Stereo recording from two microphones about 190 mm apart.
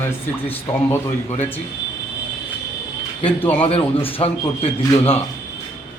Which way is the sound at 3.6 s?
30° left (ahead or behind).